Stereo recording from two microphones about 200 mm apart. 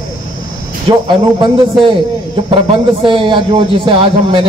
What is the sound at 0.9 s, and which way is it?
Speech, 30° right (ahead or behind).